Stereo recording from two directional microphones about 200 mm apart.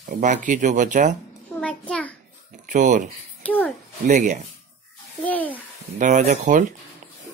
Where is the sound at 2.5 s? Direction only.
40° right (ahead or behind).